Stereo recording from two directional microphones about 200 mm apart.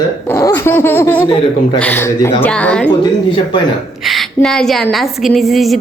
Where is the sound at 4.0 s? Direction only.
Centre (ahead or behind).